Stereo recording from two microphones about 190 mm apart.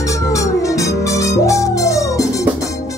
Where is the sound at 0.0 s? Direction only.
15° left (ahead or behind).